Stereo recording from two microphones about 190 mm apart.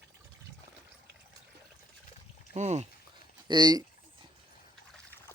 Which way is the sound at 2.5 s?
40° right (ahead or behind).